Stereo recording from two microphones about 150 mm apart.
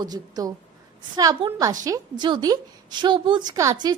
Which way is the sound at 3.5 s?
20° right (ahead or behind).